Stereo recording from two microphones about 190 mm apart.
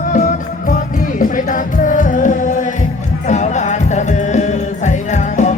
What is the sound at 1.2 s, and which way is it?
Music, 45° left (ahead or behind).